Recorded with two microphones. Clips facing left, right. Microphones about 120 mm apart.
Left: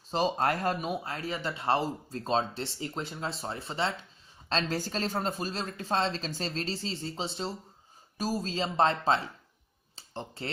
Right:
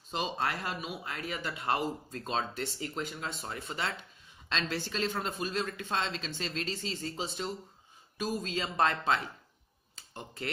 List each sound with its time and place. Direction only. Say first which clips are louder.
0.1 s speech: left 6 dB; 40° left (ahead or behind)